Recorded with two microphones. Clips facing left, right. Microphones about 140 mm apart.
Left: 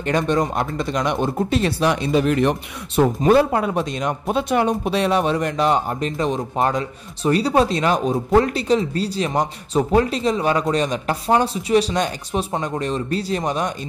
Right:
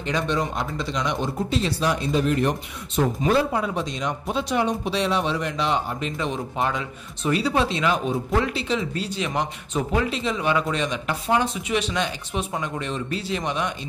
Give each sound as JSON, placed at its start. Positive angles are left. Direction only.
{"t": 0.0, "sound": "speech", "side_deg": 50}
{"t": 3.2, "sound": "speech", "side_deg": 55}